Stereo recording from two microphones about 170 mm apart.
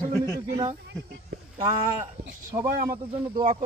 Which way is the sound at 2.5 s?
30° right (ahead or behind).